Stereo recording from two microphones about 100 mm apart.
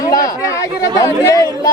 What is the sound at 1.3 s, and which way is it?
Speech, 35° left (ahead or behind).